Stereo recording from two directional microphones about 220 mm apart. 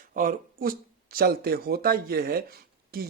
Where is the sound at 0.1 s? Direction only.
40° right (ahead or behind).